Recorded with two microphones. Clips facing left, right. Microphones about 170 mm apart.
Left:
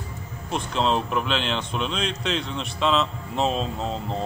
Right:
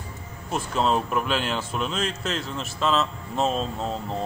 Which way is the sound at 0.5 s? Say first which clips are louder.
Even; 5° right (ahead or behind).